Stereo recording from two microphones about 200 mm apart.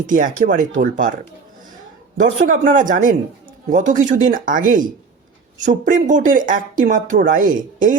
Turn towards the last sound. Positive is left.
turn(degrees=-40)  # may be behind; listen again after turning